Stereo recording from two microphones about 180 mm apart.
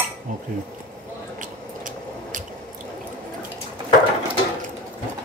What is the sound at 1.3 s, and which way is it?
Squish, 45° right (ahead or behind).